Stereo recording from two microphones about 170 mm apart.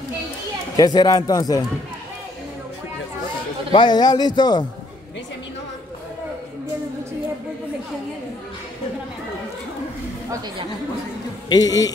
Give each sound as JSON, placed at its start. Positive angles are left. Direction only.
{"t": 0.7, "sound": "a man's voice", "side_deg": 20}
{"t": 3.7, "sound": "a man's voice", "side_deg": 25}
{"t": 11.4, "sound": "a man's voice", "side_deg": 25}